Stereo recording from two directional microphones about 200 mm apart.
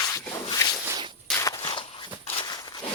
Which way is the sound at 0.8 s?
20° right (ahead or behind).